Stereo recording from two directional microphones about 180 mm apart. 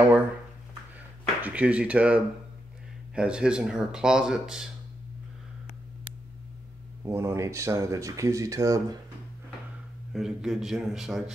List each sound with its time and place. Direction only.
0.9 s speech: 10° right (ahead or behind)
7.1 s speech: 15° right (ahead or behind)
10.1 s speech: centre (ahead or behind)